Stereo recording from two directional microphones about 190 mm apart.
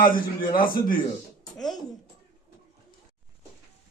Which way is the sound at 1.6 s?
Centre (ahead or behind).